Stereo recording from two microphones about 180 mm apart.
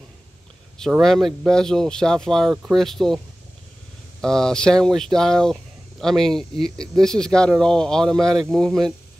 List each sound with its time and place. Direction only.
1.0 s speech: centre (ahead or behind)
4.2 s speech: 5° left (ahead or behind)